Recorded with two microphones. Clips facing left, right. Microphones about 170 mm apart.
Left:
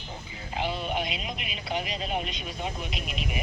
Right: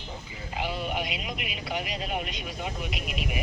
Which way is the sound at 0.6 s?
10° right (ahead or behind).